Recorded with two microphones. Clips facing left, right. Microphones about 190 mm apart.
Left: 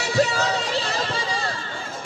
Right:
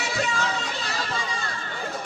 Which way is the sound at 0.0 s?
35° left (ahead or behind).